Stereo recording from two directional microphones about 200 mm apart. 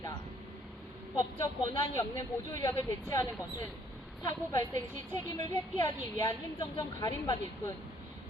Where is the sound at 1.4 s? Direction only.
15° left (ahead or behind).